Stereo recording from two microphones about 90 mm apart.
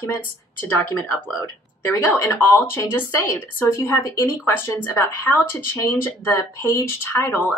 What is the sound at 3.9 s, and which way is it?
Speech, 35° left (ahead or behind).